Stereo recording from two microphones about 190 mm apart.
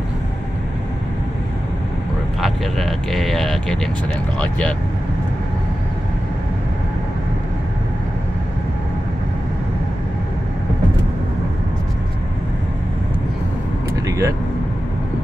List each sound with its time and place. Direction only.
2.4 s vehicle: centre (ahead or behind)
4.4 s speech: 5° left (ahead or behind)
14.0 s vehicle: 15° right (ahead or behind)